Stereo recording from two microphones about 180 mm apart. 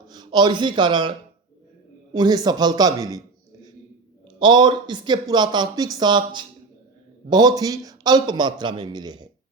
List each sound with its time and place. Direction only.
0.1 s a man's voice: 25° right (ahead or behind)
2.1 s a man's voice: 20° right (ahead or behind)
4.4 s a man's voice: 25° right (ahead or behind)